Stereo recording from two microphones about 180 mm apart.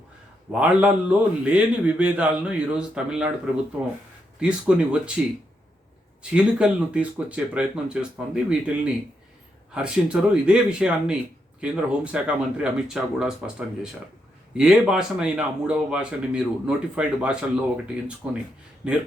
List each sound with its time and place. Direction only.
0.5 s a man's voice: 5° right (ahead or behind)
6.3 s a man's voice: 5° right (ahead or behind)
14.5 s a man's voice: 5° right (ahead or behind)